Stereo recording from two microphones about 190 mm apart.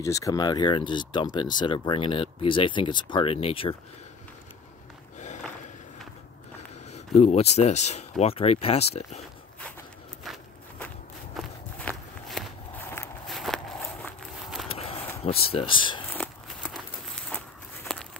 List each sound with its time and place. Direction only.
0.0 s speech: 15° left (ahead or behind)
6.9 s speech: 35° left (ahead or behind)
10.2 s walk: centre (ahead or behind)
13.3 s walk: centre (ahead or behind)
14.7 s a sound: 30° left (ahead or behind)
16.1 s walk: 5° left (ahead or behind)